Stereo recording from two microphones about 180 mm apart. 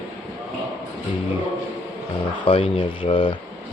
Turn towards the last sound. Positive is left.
turn(degrees=30)  # may be behind; listen again after turning